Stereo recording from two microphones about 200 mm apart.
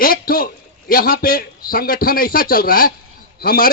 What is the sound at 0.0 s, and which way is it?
A man's voice, 45° left (ahead or behind).